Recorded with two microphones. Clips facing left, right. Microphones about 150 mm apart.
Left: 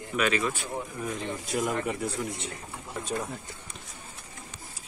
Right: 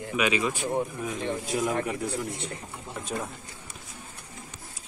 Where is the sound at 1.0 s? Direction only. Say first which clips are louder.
Right 3 dB; centre (ahead or behind).